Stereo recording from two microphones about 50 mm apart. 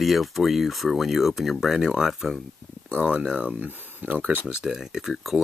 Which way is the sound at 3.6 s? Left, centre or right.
Right.